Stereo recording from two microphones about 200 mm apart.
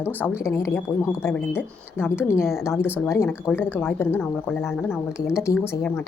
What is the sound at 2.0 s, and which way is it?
Speech, 10° left (ahead or behind).